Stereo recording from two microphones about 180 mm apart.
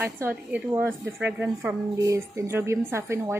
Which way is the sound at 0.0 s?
10° right (ahead or behind).